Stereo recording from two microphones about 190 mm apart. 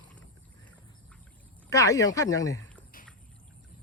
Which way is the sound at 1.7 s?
15° left (ahead or behind).